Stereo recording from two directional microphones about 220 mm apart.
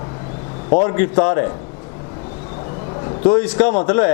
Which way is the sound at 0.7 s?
25° left (ahead or behind).